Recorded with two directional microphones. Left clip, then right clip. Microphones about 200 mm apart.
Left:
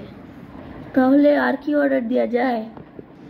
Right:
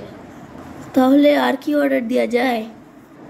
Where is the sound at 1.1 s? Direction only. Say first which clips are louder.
Right 2 dB; 10° left (ahead or behind).